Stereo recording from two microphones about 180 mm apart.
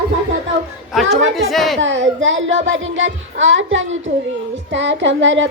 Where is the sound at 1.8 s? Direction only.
90° right.